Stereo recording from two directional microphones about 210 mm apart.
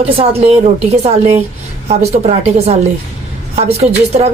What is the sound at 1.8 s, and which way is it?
A woman's voice, 30° right (ahead or behind).